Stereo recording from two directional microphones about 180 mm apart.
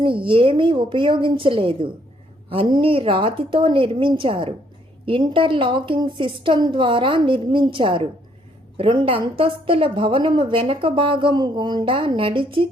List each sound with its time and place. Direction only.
0.0 s a woman's voice: 30° right (ahead or behind)